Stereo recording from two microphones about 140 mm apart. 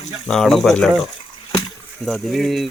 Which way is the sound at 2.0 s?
Centre (ahead or behind).